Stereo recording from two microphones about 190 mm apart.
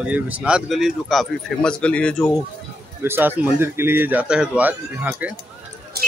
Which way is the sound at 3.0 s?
10° right (ahead or behind).